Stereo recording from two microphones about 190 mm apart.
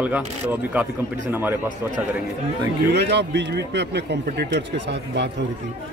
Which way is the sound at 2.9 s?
65° right (ahead or behind).